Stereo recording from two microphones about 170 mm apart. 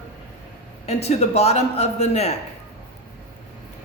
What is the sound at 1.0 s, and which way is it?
Speech, 40° left (ahead or behind).